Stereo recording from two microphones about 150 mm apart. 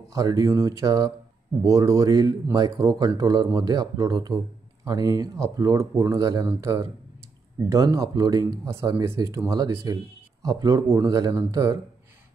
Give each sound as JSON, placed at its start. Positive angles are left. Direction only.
{"t": 0.1, "sound": "speech", "side_deg": -20}